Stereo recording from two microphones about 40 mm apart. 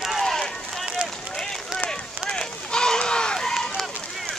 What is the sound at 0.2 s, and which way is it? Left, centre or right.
Run, centre.